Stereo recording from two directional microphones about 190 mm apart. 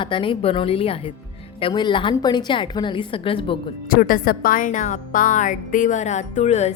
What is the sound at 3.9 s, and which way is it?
A woman's voice, 50° left (ahead or behind).